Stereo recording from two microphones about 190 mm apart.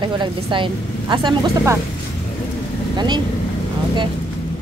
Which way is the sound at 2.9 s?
25° right (ahead or behind).